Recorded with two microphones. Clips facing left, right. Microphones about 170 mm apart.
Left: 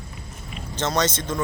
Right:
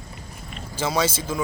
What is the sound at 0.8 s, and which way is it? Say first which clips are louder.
Speech: even; 5° right (ahead or behind).